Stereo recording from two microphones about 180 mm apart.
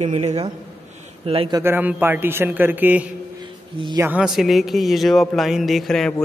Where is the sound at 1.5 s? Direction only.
10° right (ahead or behind).